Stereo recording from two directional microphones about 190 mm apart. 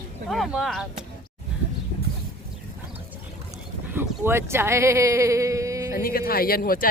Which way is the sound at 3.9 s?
10° right (ahead or behind).